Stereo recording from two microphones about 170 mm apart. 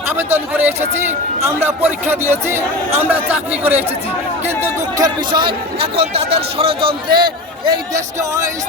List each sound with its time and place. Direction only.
0.3 s speech: 10° right (ahead or behind)
4.9 s a man's voice: 25° right (ahead or behind)
7.9 s speech: 20° right (ahead or behind)